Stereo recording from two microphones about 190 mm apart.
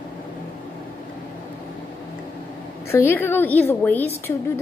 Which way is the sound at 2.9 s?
10° left (ahead or behind).